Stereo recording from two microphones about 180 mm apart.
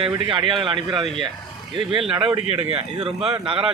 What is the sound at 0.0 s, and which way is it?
Speech, 30° right (ahead or behind).